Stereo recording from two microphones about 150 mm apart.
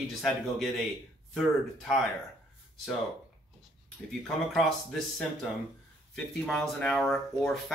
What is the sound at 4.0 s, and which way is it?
Speech, 5° left (ahead or behind).